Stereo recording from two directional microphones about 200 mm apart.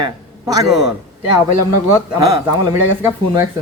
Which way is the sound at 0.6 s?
Centre (ahead or behind).